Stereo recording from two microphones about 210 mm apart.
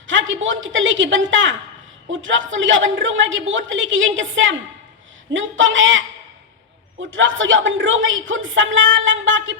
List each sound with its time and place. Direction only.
0.1 s speech: 65° right (ahead or behind)
7.0 s speech: 65° right (ahead or behind)